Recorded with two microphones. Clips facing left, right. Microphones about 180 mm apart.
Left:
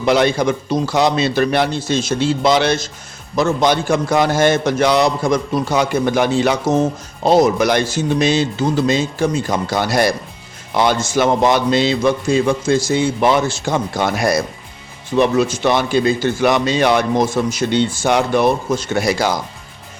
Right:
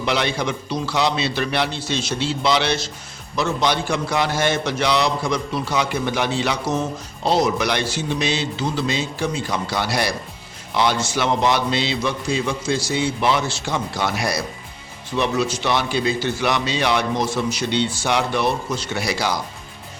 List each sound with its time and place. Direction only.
0.0 s a man's voice: 45° left (ahead or behind)